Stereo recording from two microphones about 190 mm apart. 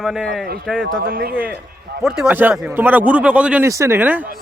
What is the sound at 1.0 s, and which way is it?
Speech, 50° right (ahead or behind).